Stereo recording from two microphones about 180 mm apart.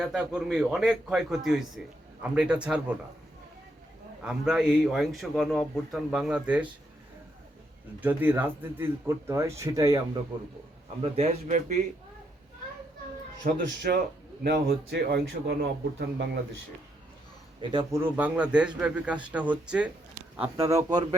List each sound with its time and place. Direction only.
0.0 s a man's voice: centre (ahead or behind)
4.2 s a man's voice: 5° right (ahead or behind)
8.0 s a man's voice: 10° right (ahead or behind); by 10.5 s 25° right (ahead or behind)
11.4 s a man's voice: 45° right (ahead or behind)
13.4 s a man's voice: 60° right (ahead or behind)
17.6 s a man's voice: 25° right (ahead or behind)
18.0 s speech: 10° right (ahead or behind)